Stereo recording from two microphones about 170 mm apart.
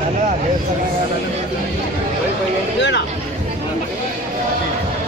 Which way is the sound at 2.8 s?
90° left.